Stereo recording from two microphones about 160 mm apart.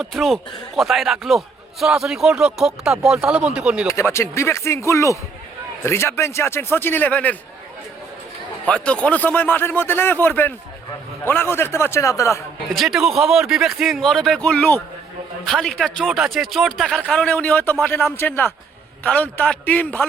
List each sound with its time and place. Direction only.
0.0 s a man's voice: centre (ahead or behind)
3.9 s speech: 15° left (ahead or behind)
8.6 s speech: 5° left (ahead or behind)
12.7 s a man's voice: centre (ahead or behind)